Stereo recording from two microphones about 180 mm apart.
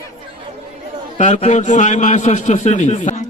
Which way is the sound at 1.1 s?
40° left (ahead or behind).